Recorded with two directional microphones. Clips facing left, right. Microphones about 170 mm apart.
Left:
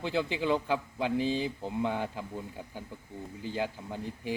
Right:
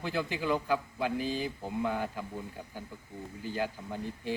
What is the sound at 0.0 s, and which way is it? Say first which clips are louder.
A man's voice: left 3 dB; 20° left (ahead or behind).